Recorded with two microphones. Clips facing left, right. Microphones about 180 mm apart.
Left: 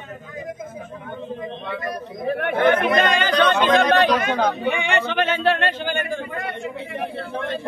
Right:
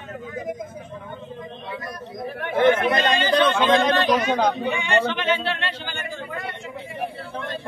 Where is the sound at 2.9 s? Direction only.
55° left (ahead or behind).